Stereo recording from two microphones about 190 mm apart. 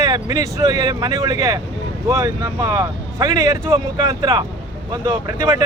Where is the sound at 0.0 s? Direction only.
20° right (ahead or behind).